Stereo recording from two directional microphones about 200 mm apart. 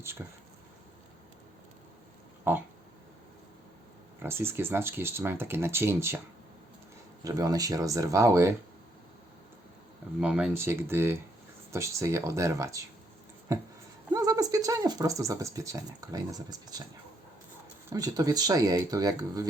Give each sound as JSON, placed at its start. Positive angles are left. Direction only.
{"t": 0.2, "sound": "speech", "side_deg": -5}
{"t": 2.5, "sound": "speech", "side_deg": -10}
{"t": 4.2, "sound": "speech", "side_deg": -10}
{"t": 7.3, "sound": "speech", "side_deg": -15}
{"t": 10.2, "sound": "speech", "side_deg": -5}
{"t": 14.1, "sound": "speech", "side_deg": -20}
{"t": 17.9, "sound": "speech", "side_deg": -20}